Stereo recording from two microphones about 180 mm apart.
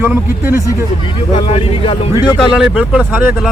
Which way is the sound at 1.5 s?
30° left (ahead or behind).